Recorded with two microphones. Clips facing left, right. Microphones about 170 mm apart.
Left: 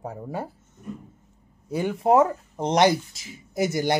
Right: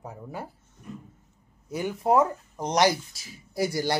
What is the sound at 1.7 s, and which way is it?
Speech, 25° left (ahead or behind).